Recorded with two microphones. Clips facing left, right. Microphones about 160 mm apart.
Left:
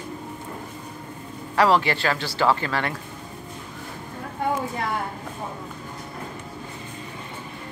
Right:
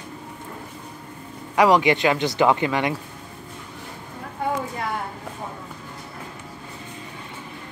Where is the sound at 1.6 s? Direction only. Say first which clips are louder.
Right 3 dB; 15° right (ahead or behind).